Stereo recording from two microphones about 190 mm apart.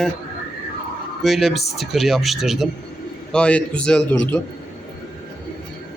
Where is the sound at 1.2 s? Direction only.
Centre (ahead or behind).